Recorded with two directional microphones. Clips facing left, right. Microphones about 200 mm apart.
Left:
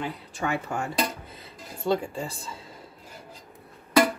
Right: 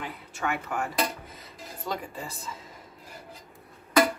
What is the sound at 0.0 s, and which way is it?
Speech, 30° left (ahead or behind).